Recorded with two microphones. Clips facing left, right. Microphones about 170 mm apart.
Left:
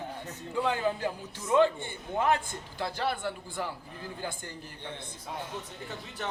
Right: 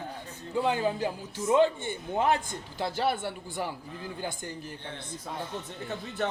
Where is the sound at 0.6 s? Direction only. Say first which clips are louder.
Right 2 dB; 20° right (ahead or behind).